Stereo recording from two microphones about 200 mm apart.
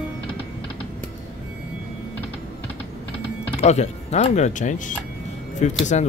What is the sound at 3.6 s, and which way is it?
Speech, 35° left (ahead or behind).